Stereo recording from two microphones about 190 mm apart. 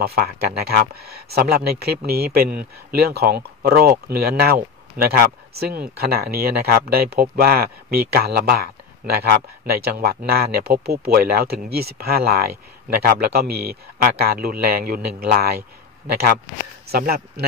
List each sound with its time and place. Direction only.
0.0 s speech: 55° right (ahead or behind)